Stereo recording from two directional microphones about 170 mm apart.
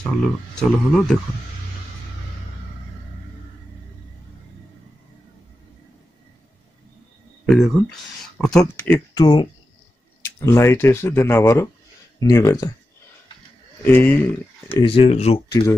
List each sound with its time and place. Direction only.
0.0 s speech: 5° left (ahead or behind)
7.4 s speech: centre (ahead or behind)
9.1 s speech: 25° left (ahead or behind)
10.4 s speech: 15° left (ahead or behind)
13.8 s speech: 10° left (ahead or behind)
14.8 s speech: 35° left (ahead or behind)